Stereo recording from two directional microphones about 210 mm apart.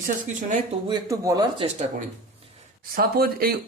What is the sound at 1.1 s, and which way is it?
Speech, 15° right (ahead or behind).